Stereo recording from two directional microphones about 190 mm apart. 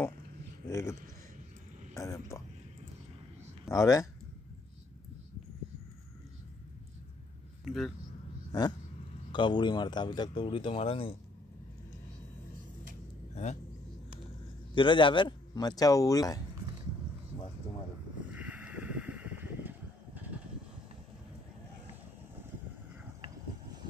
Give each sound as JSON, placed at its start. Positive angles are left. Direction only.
{"t": 0.7, "sound": "speech", "side_deg": 15}
{"t": 2.0, "sound": "speech", "side_deg": 15}
{"t": 3.7, "sound": "speech", "side_deg": 15}
{"t": 7.6, "sound": "speech", "side_deg": 0}
{"t": 8.5, "sound": "a sound", "side_deg": 20}
{"t": 9.3, "sound": "speech", "side_deg": 25}
{"t": 13.3, "sound": "speech", "side_deg": 35}
{"t": 14.7, "sound": "speech", "side_deg": 25}
{"t": 18.3, "sound": "a sound", "side_deg": -5}